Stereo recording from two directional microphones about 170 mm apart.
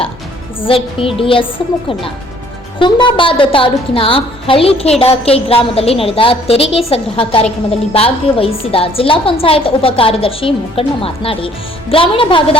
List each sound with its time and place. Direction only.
0.6 s a woman's voice: 30° left (ahead or behind)
2.7 s a woman's voice: 30° left (ahead or behind)